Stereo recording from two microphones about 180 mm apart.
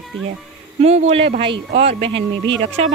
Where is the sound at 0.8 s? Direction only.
35° right (ahead or behind).